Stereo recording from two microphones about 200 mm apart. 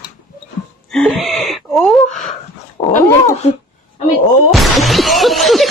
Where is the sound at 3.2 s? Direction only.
35° left (ahead or behind).